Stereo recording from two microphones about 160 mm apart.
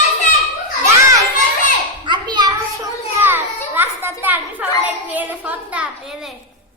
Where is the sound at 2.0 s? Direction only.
30° right (ahead or behind).